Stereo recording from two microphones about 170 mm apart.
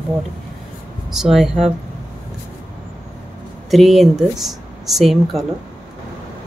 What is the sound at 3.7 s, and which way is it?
A woman's voice, centre (ahead or behind).